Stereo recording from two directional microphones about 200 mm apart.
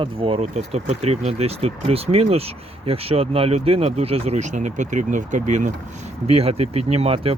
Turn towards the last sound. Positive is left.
turn(degrees=-30)  # may be behind; listen again after turning